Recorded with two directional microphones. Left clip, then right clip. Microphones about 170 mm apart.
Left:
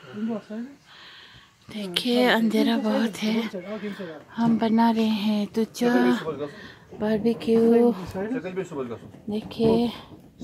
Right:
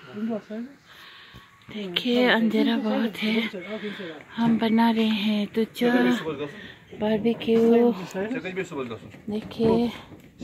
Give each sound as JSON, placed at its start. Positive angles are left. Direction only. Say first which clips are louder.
{"t": 1.7, "sound": "speech", "louder": "even", "side_deg": 5}
{"t": 8.3, "sound": "speech", "louder": "even", "side_deg": -10}
{"t": 9.3, "sound": "speech", "louder": "left 1 dB", "side_deg": 0}